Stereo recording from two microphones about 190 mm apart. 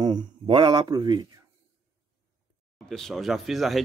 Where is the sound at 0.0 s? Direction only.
25° right (ahead or behind).